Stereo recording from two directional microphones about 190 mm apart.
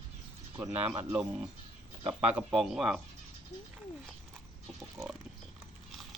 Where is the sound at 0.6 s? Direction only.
5° right (ahead or behind).